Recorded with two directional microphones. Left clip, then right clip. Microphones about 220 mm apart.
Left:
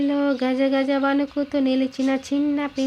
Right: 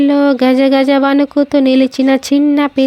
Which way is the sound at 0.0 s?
40° right (ahead or behind).